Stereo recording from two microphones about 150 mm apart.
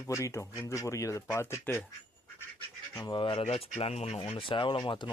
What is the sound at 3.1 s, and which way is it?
Speech, 35° left (ahead or behind).